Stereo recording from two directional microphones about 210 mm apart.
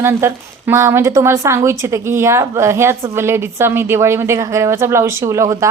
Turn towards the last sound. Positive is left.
turn(degrees=-15)  # may be behind; listen again after turning